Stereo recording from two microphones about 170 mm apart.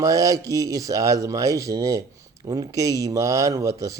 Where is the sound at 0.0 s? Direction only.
20° right (ahead or behind).